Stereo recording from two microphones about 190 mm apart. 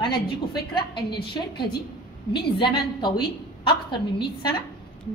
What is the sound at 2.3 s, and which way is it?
A woman's voice, 25° left (ahead or behind).